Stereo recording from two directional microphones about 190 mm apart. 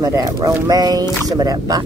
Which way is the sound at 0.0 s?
20° right (ahead or behind).